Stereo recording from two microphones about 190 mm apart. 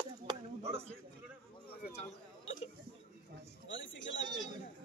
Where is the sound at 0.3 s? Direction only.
30° right (ahead or behind).